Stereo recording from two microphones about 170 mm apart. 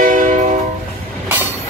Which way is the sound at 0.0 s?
50° right (ahead or behind).